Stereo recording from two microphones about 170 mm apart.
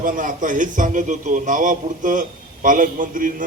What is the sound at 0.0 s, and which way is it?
A man's voice, 50° right (ahead or behind).